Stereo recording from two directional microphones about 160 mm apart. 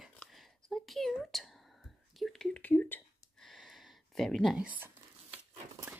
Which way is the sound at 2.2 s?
5° left (ahead or behind).